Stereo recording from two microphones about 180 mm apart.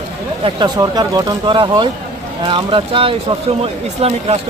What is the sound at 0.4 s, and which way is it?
Speech, 20° right (ahead or behind).